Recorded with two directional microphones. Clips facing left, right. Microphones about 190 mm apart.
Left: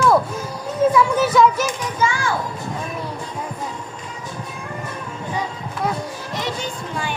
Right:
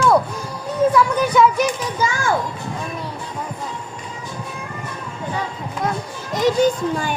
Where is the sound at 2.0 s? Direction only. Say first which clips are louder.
Even; 45° right (ahead or behind).